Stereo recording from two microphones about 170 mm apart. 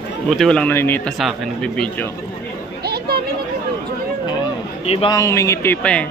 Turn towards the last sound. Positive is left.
turn(degrees=5)  # may be behind; listen again after turning